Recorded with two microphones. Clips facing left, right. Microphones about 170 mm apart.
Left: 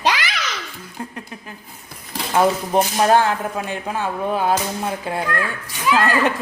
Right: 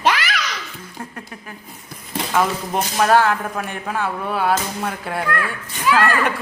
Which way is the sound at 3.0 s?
25° left (ahead or behind).